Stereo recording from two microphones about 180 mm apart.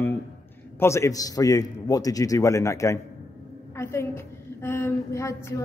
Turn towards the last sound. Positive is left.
turn(degrees=15)  # may be behind; listen again after turning